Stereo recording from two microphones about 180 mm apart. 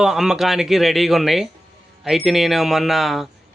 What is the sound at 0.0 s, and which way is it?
Speech, centre (ahead or behind).